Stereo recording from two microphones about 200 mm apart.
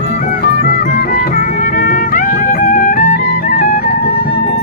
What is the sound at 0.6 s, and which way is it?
Music, 40° left (ahead or behind).